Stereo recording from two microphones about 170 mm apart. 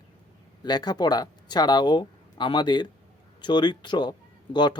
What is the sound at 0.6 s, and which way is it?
Speech, 25° left (ahead or behind).